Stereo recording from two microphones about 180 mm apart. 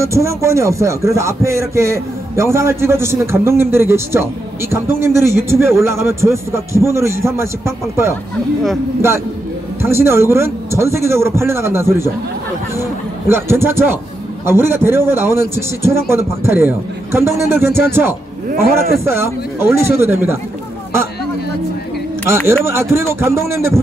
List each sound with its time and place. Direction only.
0.0 s a man's voice: 15° right (ahead or behind)
9.8 s a man's voice: 15° right (ahead or behind)
13.3 s a man's voice: 15° right (ahead or behind)
22.5 s a man's voice: 15° right (ahead or behind)